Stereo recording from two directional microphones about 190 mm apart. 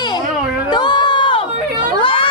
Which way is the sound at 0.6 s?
25° left (ahead or behind).